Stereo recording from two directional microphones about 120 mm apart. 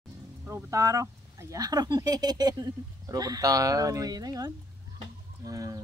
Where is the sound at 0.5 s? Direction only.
25° right (ahead or behind).